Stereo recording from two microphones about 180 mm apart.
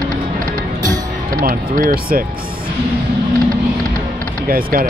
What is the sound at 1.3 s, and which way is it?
Speech, 50° right (ahead or behind).